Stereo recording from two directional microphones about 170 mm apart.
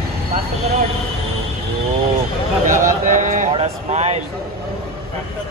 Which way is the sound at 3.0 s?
50° right (ahead or behind).